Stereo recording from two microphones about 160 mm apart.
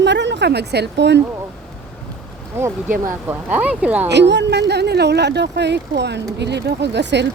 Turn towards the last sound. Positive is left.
turn(degrees=-90)